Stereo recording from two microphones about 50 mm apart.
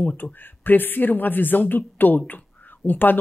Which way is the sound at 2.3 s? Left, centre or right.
Left.